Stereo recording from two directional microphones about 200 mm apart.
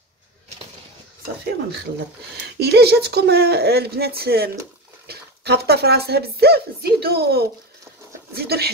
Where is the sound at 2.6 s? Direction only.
55° right (ahead or behind).